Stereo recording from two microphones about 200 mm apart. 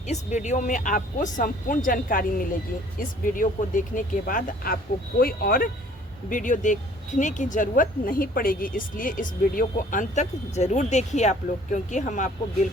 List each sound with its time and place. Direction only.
0.1 s a woman's voice: 35° left (ahead or behind)